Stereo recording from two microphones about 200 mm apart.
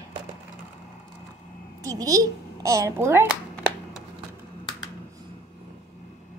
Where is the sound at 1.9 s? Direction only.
15° right (ahead or behind).